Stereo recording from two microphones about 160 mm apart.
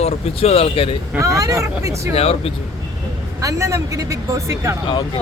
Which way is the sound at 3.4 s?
20° right (ahead or behind).